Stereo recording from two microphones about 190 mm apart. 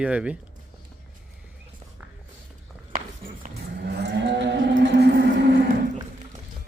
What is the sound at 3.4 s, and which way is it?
Moo, 60° right (ahead or behind).